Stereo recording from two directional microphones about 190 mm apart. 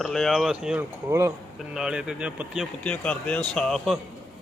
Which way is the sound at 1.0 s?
15° right (ahead or behind).